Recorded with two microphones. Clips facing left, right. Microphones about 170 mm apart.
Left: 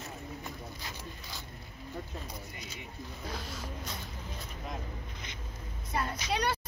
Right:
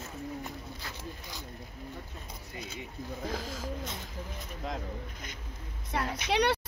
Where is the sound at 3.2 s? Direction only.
90° right.